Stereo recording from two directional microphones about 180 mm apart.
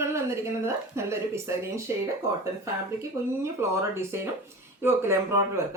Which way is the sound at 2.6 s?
15° right (ahead or behind).